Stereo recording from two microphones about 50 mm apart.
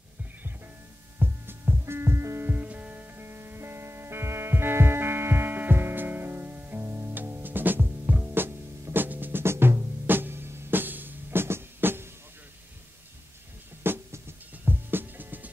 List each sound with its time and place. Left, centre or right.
1.2 s heart sounds: right
2.4 s music: right
3.2 s music: right
6.8 s music: right
7.2 s music: right
9.4 s music: right
13.9 s music: right